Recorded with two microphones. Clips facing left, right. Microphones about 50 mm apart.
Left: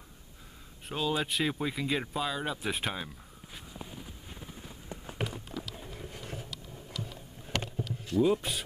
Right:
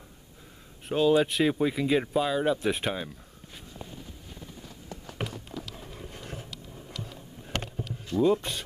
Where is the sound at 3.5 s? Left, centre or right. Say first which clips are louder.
Right 1 dB; centre.